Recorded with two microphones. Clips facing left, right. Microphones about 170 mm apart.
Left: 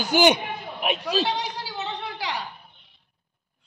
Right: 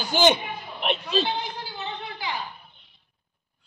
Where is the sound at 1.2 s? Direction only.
85° left.